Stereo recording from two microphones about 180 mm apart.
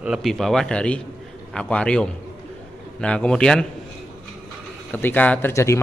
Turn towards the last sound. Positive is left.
turn(degrees=15)  # may be behind; listen again after turning